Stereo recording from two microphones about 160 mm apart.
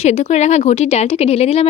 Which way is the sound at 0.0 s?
45° left (ahead or behind).